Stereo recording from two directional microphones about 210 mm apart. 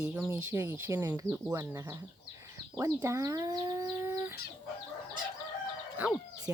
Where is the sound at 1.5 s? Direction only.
15° right (ahead or behind).